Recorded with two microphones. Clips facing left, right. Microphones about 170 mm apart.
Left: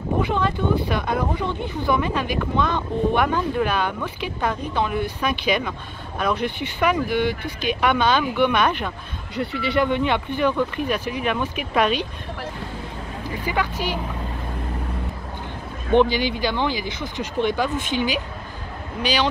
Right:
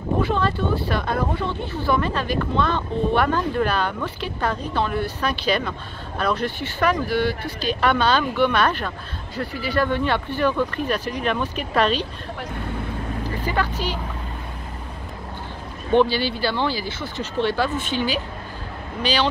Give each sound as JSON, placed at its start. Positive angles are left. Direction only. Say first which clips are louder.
{"t": 0.2, "sound": "speech", "louder": "even", "side_deg": 15}
{"t": 13.3, "sound": "speech", "louder": "left 1 dB", "side_deg": 10}
{"t": 15.9, "sound": "speech", "louder": "left 1 dB", "side_deg": 15}